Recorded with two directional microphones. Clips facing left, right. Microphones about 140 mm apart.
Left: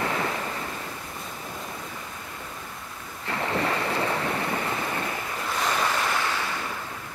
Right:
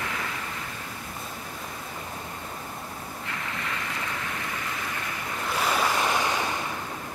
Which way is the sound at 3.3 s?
35° left (ahead or behind).